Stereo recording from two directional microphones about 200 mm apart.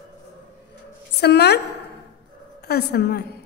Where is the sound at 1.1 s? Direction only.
55° left (ahead or behind).